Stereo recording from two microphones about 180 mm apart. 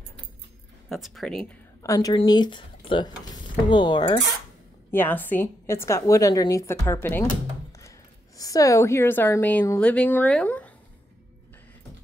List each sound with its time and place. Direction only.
0.8 s speech: centre (ahead or behind)
1.8 s speech: 20° left (ahead or behind)
4.9 s a woman's voice: 10° left (ahead or behind)
8.4 s a woman's voice: 20° left (ahead or behind)